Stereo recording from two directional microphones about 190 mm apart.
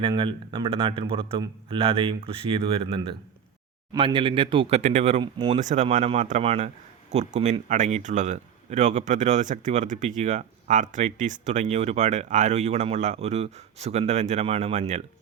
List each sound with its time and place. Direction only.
0.0 s speech: 25° right (ahead or behind)
5.2 s speech: 25° right (ahead or behind)
5.5 s speech: 40° right (ahead or behind)